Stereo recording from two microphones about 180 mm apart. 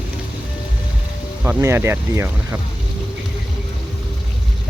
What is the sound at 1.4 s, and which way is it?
Speech, 15° right (ahead or behind).